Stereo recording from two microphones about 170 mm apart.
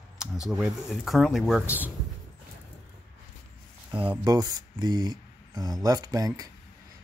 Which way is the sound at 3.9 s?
25° right (ahead or behind).